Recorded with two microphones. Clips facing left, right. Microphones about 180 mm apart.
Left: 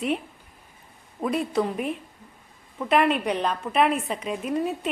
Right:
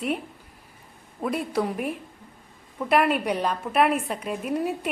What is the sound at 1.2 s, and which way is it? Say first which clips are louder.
A woman's voice: left 1 dB; 5° right (ahead or behind).